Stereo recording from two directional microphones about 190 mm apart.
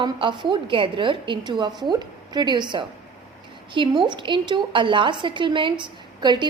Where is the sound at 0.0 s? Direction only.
25° right (ahead or behind).